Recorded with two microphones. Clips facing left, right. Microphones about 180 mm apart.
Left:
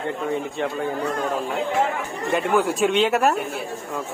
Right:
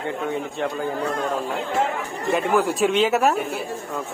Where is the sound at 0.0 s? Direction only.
Centre (ahead or behind).